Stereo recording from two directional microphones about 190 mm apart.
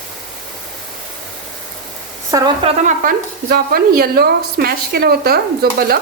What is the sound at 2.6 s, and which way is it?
Sizzle, 40° right (ahead or behind).